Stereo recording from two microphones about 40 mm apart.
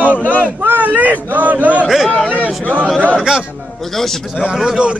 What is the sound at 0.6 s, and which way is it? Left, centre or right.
Speech, right.